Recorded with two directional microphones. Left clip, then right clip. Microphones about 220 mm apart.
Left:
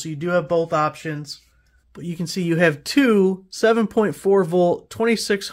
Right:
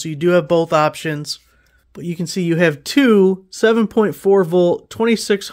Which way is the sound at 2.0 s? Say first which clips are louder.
Right 4 dB; 25° right (ahead or behind).